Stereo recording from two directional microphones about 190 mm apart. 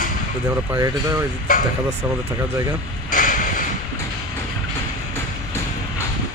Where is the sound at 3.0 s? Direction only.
45° left (ahead or behind).